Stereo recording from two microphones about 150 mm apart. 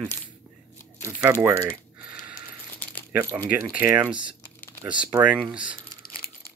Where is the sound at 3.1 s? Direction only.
20° right (ahead or behind).